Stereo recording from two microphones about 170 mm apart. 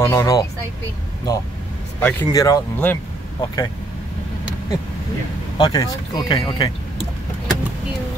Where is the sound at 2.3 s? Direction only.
20° left (ahead or behind).